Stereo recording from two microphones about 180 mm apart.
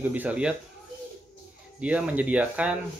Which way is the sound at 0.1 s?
10° right (ahead or behind).